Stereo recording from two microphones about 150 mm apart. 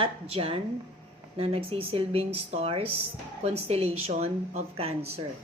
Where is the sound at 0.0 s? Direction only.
40° right (ahead or behind).